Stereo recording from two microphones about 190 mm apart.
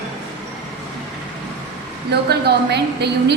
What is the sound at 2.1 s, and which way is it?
A woman's voice, 60° right (ahead or behind).